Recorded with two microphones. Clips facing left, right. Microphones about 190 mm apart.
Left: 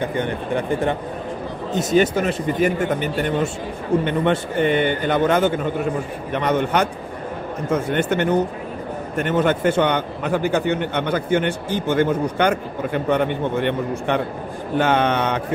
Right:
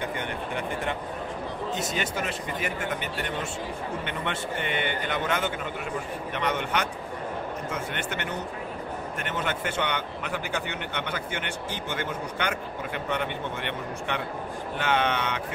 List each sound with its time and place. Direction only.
2.1 s a man's voice: 40° left (ahead or behind)